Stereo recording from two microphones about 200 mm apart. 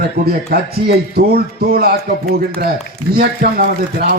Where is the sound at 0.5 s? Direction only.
50° right (ahead or behind).